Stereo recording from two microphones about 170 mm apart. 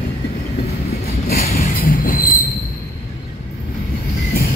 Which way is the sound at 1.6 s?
55° left (ahead or behind).